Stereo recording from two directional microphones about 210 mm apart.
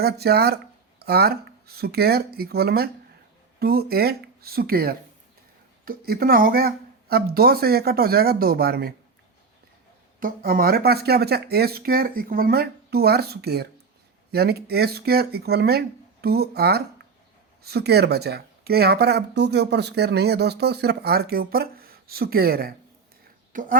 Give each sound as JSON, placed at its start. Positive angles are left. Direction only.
{"t": 0.0, "sound": "speech", "side_deg": -50}
{"t": 10.2, "sound": "speech", "side_deg": -40}